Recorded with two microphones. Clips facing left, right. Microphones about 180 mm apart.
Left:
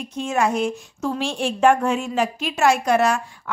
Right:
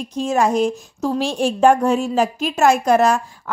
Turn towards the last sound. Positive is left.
turn(degrees=-40)  # may be behind; listen again after turning